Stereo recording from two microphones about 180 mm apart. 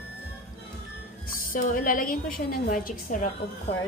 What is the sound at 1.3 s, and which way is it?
A woman's voice, 50° left (ahead or behind).